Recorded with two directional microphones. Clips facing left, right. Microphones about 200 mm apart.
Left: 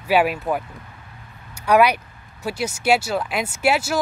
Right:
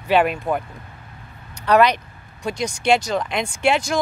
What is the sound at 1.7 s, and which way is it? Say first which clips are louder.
Speech: even; 10° left (ahead or behind).